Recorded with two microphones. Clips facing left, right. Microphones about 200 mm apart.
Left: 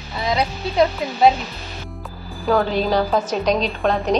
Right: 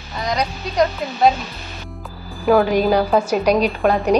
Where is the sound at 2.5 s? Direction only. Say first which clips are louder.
Right 3 dB; 10° right (ahead or behind).